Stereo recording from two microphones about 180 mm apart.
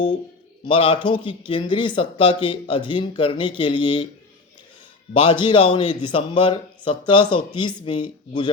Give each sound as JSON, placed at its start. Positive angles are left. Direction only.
{"t": 0.6, "sound": "speech", "side_deg": 30}
{"t": 5.1, "sound": "speech", "side_deg": 30}